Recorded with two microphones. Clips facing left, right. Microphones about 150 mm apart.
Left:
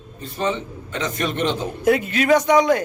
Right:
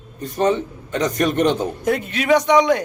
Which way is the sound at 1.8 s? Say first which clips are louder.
Left 3 dB; 5° left (ahead or behind).